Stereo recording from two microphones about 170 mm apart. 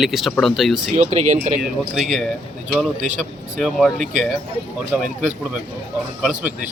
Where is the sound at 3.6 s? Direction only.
Centre (ahead or behind).